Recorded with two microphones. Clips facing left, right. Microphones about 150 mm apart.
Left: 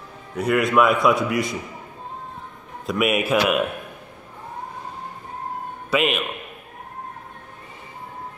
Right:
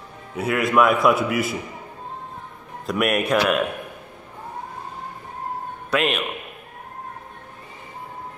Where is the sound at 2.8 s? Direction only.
Centre (ahead or behind).